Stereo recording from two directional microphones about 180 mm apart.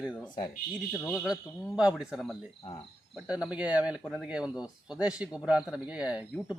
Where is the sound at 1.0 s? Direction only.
5° left (ahead or behind).